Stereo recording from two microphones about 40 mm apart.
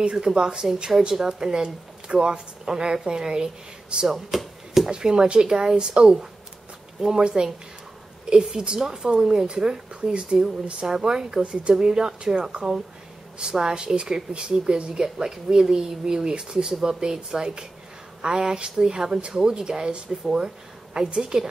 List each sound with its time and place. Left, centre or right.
0.0 s speech: centre
4.3 s a sound: centre
4.8 s a woman's voice: centre